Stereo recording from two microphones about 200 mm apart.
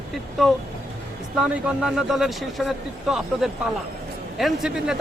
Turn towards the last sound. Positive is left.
turn(degrees=0)  # may be behind; listen again after turning